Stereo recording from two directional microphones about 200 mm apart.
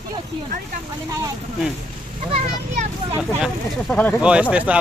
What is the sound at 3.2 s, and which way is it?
Speech, 5° right (ahead or behind).